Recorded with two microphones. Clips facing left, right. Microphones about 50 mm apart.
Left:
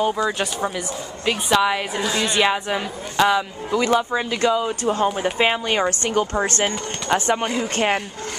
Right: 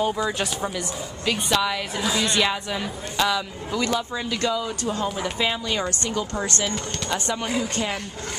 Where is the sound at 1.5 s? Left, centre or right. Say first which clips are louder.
Left 6 dB; left.